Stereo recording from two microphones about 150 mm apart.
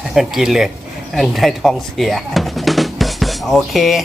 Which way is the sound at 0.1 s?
Centre (ahead or behind).